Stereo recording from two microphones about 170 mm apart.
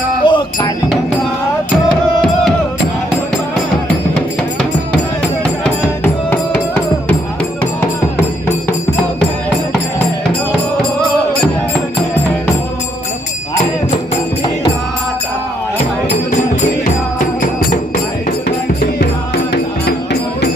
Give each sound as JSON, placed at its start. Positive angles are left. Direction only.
{"t": 0.2, "sound": "music", "side_deg": 25}
{"t": 4.9, "sound": "music", "side_deg": 5}
{"t": 16.8, "sound": "music", "side_deg": 50}
{"t": 18.9, "sound": "music", "side_deg": 80}